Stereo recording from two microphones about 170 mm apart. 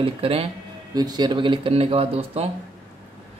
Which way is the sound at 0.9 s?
25° right (ahead or behind).